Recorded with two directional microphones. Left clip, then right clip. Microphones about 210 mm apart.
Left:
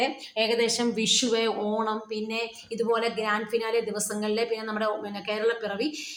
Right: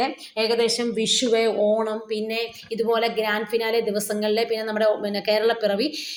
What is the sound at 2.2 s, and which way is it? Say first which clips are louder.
A woman's voice: right 4 dB; 10° right (ahead or behind).